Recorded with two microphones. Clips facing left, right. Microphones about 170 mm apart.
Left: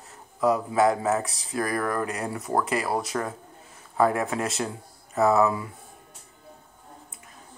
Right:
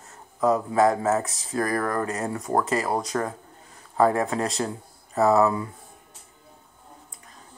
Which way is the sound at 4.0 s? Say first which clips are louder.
Right 2 dB; 35° right (ahead or behind).